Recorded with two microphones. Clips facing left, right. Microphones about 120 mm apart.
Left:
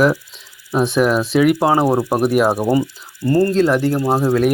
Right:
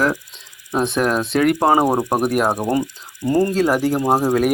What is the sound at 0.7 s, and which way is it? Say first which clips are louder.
Speech: left 3 dB; 5° left (ahead or behind).